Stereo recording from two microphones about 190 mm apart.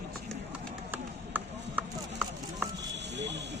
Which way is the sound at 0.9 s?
10° right (ahead or behind).